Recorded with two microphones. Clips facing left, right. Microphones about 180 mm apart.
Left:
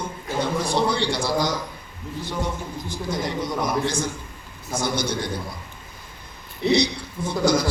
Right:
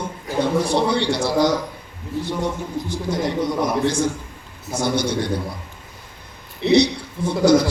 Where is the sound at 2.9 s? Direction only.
65° right (ahead or behind).